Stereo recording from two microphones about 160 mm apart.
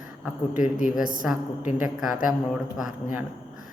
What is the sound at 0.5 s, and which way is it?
Speech, 55° left (ahead or behind).